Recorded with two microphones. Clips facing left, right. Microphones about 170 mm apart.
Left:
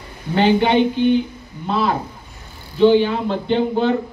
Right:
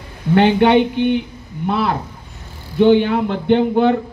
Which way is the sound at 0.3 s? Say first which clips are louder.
Right 3 dB; 60° right (ahead or behind).